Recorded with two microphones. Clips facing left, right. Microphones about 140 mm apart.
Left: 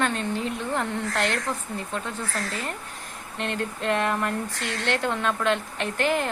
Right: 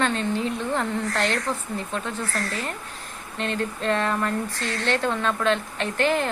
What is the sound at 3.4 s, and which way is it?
Speech, 15° left (ahead or behind).